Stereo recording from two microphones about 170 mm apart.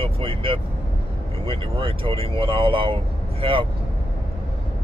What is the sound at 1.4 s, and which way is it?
Speech, 30° right (ahead or behind).